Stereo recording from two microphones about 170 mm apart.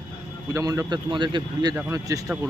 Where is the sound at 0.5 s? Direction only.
20° right (ahead or behind).